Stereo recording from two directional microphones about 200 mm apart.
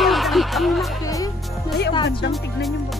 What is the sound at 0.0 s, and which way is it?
Music, centre (ahead or behind).